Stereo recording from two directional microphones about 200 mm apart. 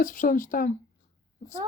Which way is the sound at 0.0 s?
40° left (ahead or behind).